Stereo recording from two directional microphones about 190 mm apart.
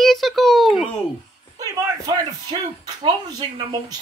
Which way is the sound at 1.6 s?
20° right (ahead or behind).